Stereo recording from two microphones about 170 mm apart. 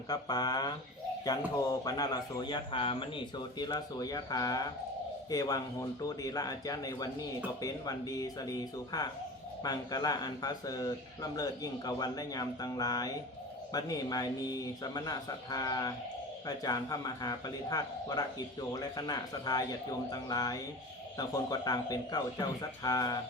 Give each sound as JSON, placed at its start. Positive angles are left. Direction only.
{"t": 0.1, "sound": "a man's voice", "side_deg": 25}
{"t": 1.7, "sound": "a man's voice", "side_deg": 20}